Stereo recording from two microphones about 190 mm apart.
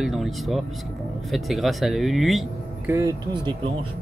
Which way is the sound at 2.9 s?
15° right (ahead or behind).